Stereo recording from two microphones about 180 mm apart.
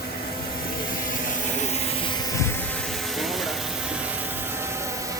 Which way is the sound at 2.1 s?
20° left (ahead or behind).